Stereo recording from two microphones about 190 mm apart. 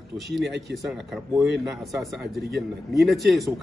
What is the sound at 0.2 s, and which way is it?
Speech, centre (ahead or behind).